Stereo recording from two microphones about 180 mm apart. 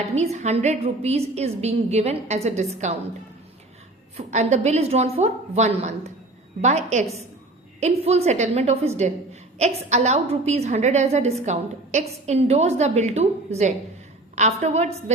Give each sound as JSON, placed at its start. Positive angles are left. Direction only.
{"t": 0.0, "sound": "a woman's voice", "side_deg": -40}
{"t": 4.3, "sound": "a woman's voice", "side_deg": -40}